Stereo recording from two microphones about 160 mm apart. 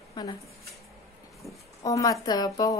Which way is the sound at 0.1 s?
30° left (ahead or behind).